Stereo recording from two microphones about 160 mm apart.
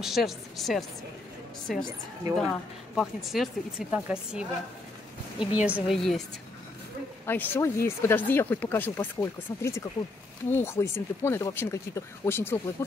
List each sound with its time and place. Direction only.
0.0 s speech: centre (ahead or behind)
5.5 s speech: 10° right (ahead or behind)
7.2 s speech: 10° left (ahead or behind)